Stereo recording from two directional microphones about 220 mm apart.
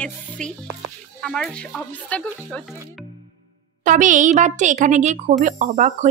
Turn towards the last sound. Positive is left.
turn(degrees=-30)  # may be behind; listen again after turning